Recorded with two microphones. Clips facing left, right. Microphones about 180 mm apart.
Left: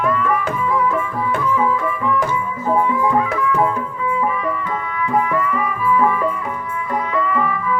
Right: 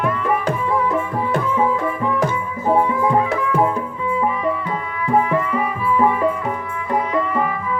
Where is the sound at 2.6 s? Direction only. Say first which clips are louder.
Right 1 dB; 30° right (ahead or behind).